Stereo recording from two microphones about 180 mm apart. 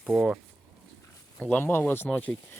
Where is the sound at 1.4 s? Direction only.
5° left (ahead or behind).